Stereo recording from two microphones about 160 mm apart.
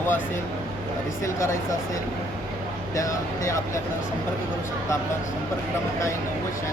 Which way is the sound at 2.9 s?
20° left (ahead or behind).